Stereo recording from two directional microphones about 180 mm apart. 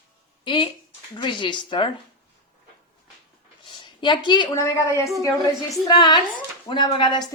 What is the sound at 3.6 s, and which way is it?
A woman's voice, 25° left (ahead or behind).